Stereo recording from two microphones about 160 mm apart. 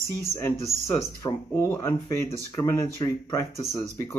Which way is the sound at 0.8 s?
15° left (ahead or behind).